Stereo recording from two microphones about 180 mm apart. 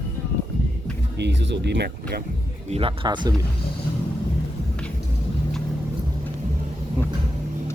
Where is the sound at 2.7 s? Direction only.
30° right (ahead or behind).